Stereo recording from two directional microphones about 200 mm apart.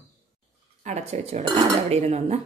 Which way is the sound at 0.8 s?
35° right (ahead or behind).